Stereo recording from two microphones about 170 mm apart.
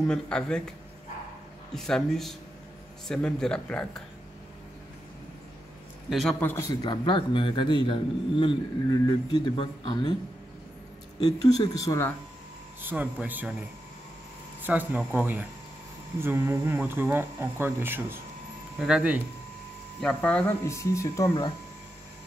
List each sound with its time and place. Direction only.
0.0 s speech: 5° left (ahead or behind)
1.7 s speech: 5° left (ahead or behind)
6.0 s a man's voice: centre (ahead or behind)
6.4 s speech: 15° left (ahead or behind)
6.9 s a man's voice: 30° left (ahead or behind)
11.1 s a man's voice: 25° left (ahead or behind)
12.8 s speech: 10° right (ahead or behind)
20.0 s speech: 5° left (ahead or behind)